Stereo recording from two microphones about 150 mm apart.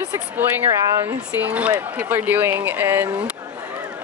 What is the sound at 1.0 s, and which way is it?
Speech, 10° right (ahead or behind).